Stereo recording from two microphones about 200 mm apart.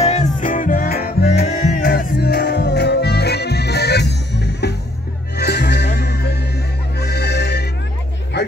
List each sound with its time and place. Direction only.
0.0 s music: 35° left (ahead or behind); by 8.5 s 55° left (ahead or behind)